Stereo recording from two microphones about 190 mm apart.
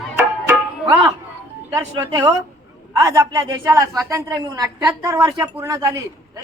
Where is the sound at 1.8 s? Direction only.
20° right (ahead or behind).